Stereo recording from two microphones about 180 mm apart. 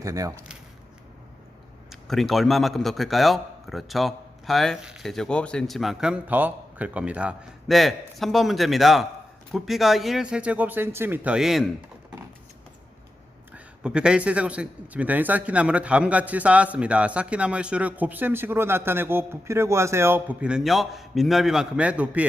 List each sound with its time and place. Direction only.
0.0 s speech: 20° right (ahead or behind)
1.9 s a man's voice: centre (ahead or behind)
13.8 s a man's voice: 5° right (ahead or behind)